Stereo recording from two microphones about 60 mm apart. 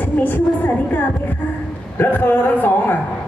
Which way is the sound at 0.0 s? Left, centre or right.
Left.